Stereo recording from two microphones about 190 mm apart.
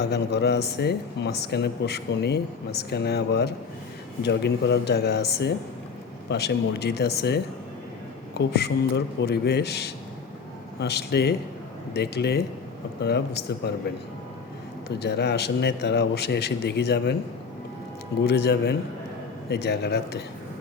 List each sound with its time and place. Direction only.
0.0 s speech: 60° left (ahead or behind)
14.8 s speech: 60° left (ahead or behind)
18.2 s speech: 60° left (ahead or behind)